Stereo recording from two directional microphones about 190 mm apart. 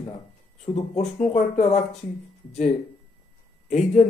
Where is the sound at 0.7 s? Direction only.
35° left (ahead or behind).